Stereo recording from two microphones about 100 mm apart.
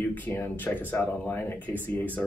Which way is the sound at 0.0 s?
15° left (ahead or behind).